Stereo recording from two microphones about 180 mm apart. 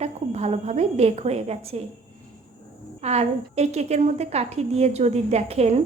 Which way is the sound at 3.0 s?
35° right (ahead or behind).